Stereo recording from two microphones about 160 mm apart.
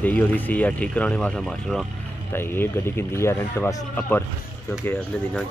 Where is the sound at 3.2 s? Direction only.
15° left (ahead or behind).